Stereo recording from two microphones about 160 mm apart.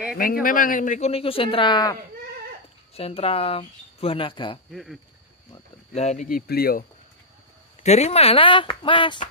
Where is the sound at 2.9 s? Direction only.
40° left (ahead or behind).